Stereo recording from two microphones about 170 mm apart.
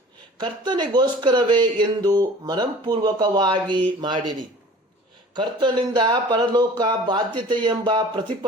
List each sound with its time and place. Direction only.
0.3 s speech: 25° right (ahead or behind)